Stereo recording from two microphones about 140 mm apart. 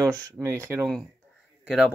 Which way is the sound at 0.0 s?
25° right (ahead or behind).